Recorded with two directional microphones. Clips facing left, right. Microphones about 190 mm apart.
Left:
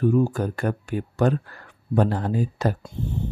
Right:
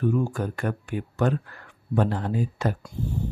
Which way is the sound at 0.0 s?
35° left (ahead or behind).